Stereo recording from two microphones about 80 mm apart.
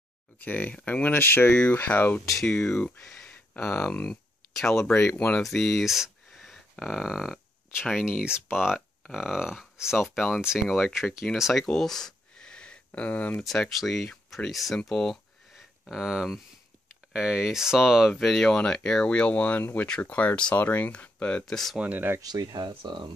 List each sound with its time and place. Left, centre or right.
0.4 s speech: left; by 8.7 s centre
8.7 s speech: centre
11.6 s a sound: centre
13.4 s speech: centre
14.8 s a sound: centre
17.1 s speech: centre
21.7 s speech: centre
22.2 s speech: right